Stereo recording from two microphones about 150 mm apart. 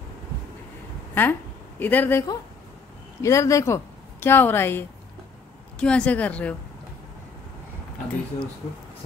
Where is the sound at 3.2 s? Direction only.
20° left (ahead or behind).